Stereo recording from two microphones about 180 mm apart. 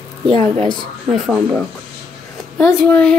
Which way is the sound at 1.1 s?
5° right (ahead or behind).